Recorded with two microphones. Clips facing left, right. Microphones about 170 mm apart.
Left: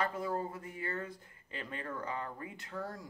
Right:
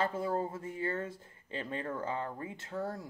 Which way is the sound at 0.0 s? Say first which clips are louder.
Right 3 dB; 25° right (ahead or behind).